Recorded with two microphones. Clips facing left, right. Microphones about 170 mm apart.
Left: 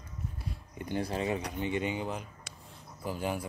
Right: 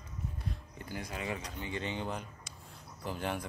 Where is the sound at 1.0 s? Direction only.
30° left (ahead or behind).